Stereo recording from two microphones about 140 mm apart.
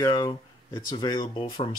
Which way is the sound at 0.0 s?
25° left (ahead or behind).